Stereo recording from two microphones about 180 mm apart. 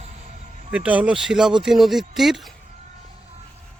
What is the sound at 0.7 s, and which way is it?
Speech, 10° right (ahead or behind).